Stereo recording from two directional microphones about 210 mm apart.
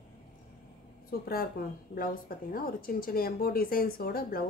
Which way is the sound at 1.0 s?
45° left (ahead or behind).